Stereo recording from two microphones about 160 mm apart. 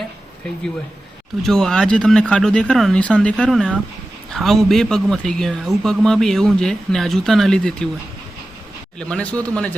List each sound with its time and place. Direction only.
1.4 s speech: centre (ahead or behind)
9.0 s speech: 5° left (ahead or behind)